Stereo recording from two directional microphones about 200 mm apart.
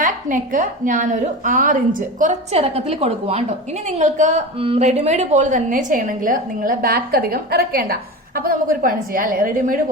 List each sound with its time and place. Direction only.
0.0 s a woman's voice: 45° right (ahead or behind)